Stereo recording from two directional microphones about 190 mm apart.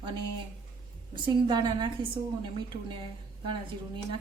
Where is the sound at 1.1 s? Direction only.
25° right (ahead or behind).